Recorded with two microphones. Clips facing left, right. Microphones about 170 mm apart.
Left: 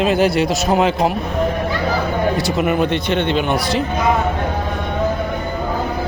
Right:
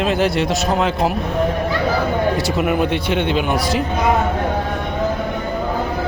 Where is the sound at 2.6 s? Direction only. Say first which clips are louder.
Left 1 dB; 5° right (ahead or behind).